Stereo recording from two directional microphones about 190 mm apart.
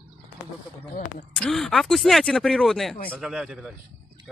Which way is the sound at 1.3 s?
Centre (ahead or behind).